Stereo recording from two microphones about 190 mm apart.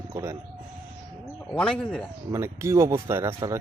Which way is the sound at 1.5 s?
5° left (ahead or behind).